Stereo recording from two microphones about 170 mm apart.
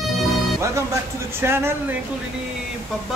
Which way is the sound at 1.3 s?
15° right (ahead or behind).